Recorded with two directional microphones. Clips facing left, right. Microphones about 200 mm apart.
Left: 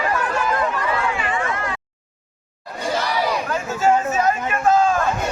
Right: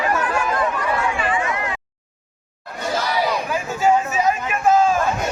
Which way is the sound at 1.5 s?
15° right (ahead or behind).